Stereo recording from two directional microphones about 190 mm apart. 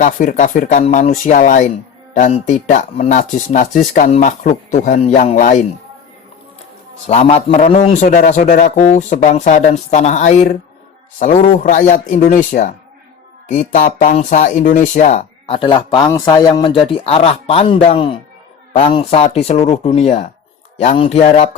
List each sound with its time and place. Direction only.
0.0 s speech: 40° left (ahead or behind)
7.1 s speech: 35° left (ahead or behind)
15.4 s a man's voice: 25° left (ahead or behind)